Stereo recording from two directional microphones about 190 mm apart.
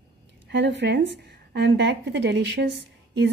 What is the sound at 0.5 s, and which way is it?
A woman's voice, 65° right (ahead or behind).